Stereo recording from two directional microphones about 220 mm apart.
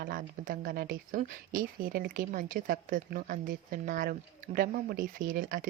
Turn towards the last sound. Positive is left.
turn(degrees=-40)  # may be behind; listen again after turning